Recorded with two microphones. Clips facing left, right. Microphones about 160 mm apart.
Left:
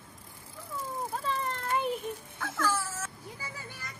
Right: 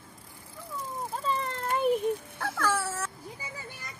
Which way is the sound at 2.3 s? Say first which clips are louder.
Right 2 dB; 60° right (ahead or behind).